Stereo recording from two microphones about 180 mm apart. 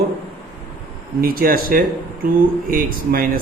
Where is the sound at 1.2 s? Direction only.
55° right (ahead or behind).